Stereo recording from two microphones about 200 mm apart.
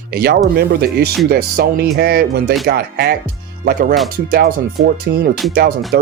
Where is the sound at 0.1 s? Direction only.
50° right (ahead or behind).